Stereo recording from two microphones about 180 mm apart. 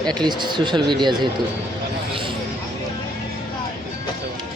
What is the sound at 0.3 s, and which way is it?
Speech, 25° right (ahead or behind).